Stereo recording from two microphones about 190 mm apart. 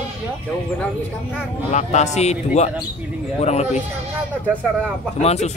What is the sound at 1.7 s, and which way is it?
Speech, 35° left (ahead or behind).